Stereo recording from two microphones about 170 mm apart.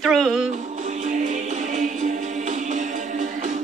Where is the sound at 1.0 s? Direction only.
50° right (ahead or behind).